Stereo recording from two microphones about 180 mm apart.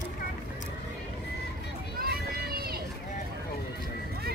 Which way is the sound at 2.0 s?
55° right (ahead or behind).